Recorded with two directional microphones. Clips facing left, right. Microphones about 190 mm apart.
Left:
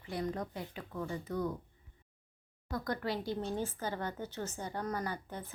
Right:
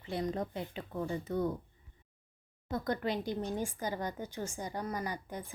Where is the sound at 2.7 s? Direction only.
25° right (ahead or behind).